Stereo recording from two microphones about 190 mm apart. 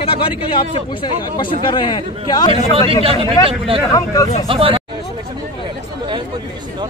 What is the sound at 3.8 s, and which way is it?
Speech, 20° left (ahead or behind).